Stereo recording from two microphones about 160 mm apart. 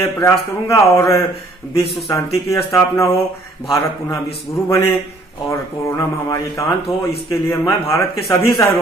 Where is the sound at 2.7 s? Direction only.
20° left (ahead or behind).